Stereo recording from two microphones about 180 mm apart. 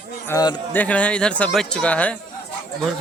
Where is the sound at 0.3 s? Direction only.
15° left (ahead or behind).